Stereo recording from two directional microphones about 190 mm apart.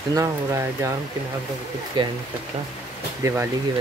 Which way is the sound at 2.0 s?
25° right (ahead or behind).